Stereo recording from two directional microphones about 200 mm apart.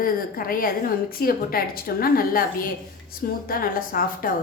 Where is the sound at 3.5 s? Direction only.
45° left (ahead or behind).